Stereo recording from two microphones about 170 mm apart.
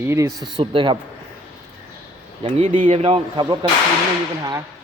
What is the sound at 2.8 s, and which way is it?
Speech, 40° right (ahead or behind).